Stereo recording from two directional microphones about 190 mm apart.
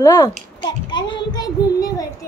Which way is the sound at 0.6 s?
25° left (ahead or behind).